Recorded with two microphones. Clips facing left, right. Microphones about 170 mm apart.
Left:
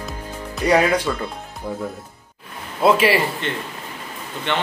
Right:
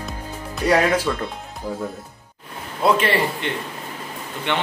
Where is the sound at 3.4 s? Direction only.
15° right (ahead or behind).